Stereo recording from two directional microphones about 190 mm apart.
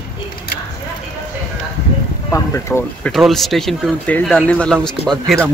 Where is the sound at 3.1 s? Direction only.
Centre (ahead or behind).